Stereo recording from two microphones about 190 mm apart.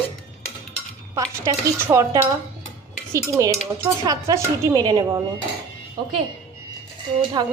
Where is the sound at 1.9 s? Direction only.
15° right (ahead or behind).